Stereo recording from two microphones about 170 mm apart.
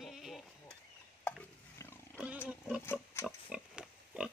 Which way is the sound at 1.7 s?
15° left (ahead or behind).